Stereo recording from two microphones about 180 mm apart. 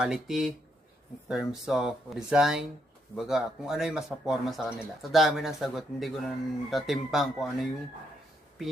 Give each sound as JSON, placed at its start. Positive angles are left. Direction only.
{"t": 0.0, "sound": "speech", "side_deg": 0}